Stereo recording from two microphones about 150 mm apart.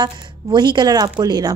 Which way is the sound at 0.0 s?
30° right (ahead or behind).